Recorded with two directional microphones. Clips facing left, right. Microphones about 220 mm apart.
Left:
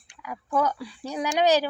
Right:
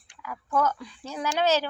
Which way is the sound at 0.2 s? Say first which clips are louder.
Left 1 dB; 15° left (ahead or behind).